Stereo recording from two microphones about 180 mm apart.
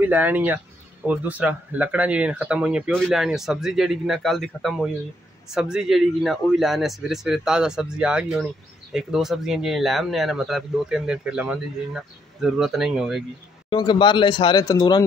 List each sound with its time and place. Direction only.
0.0 s speech: 10° right (ahead or behind)
13.7 s speech: 25° left (ahead or behind)